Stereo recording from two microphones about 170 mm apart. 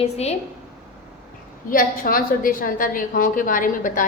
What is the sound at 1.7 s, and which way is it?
A woman's voice, 55° left (ahead or behind).